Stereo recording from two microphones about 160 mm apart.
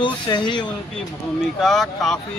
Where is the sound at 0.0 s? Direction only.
30° left (ahead or behind).